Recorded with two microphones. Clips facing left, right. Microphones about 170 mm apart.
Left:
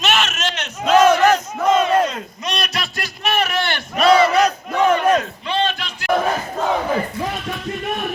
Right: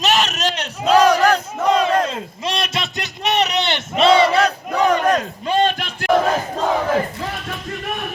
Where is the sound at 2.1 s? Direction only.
25° right (ahead or behind).